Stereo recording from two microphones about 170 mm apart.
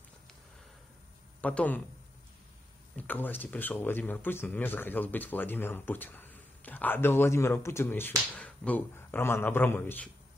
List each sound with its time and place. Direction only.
1.4 s speech: 10° left (ahead or behind)
3.0 s speech: 10° left (ahead or behind)